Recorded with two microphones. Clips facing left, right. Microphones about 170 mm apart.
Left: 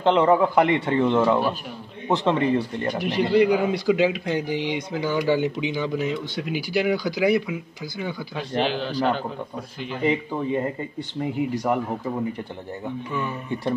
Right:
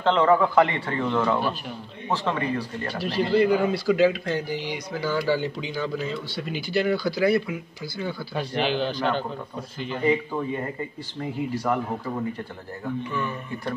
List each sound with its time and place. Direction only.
0.0 s speech: 15° left (ahead or behind)
8.5 s a man's voice: centre (ahead or behind)
11.5 s speech: 15° left (ahead or behind)
12.8 s speech: 20° left (ahead or behind)